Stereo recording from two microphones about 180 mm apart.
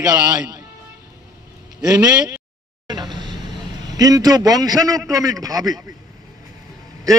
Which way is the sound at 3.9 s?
20° right (ahead or behind).